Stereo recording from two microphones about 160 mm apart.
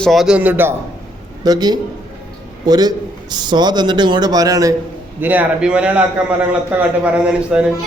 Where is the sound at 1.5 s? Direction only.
25° right (ahead or behind).